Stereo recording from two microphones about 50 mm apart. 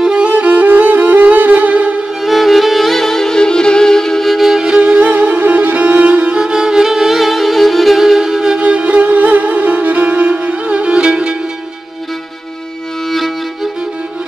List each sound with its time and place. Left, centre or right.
0.0 s violin: right
2.2 s violin: centre
5.0 s music: right
6.4 s music: centre